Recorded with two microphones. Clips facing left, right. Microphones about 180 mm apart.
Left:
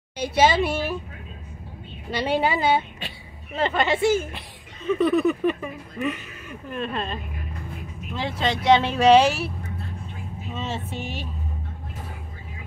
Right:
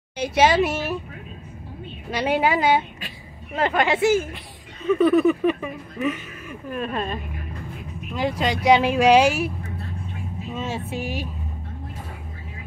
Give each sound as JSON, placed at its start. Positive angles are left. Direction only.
{"t": 0.2, "sound": "speech", "side_deg": -10}
{"t": 2.0, "sound": "speech", "side_deg": -10}
{"t": 8.4, "sound": "speech", "side_deg": -10}
{"t": 10.5, "sound": "speech", "side_deg": -10}